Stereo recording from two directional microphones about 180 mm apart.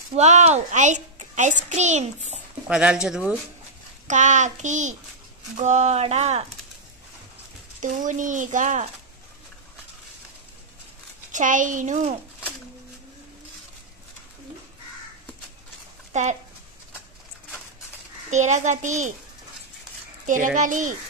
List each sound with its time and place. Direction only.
0.1 s a child's voice: 40° right (ahead or behind)
2.7 s speech: 5° right (ahead or behind)
4.1 s a child's voice: 40° right (ahead or behind)
7.8 s speech: 45° right (ahead or behind)
11.3 s speech: 45° right (ahead or behind)
16.1 s speech: 40° right (ahead or behind)
18.3 s speech: 40° right (ahead or behind)
20.2 s speech: 45° right (ahead or behind)